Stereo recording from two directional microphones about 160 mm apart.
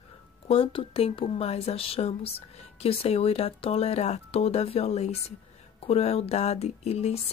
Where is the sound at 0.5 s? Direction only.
35° left (ahead or behind).